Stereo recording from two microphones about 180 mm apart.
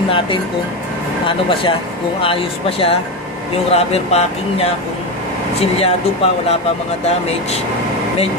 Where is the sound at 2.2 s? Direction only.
30° left (ahead or behind).